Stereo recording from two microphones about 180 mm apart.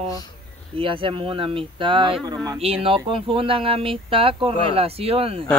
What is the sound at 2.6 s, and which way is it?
Speech, 30° right (ahead or behind).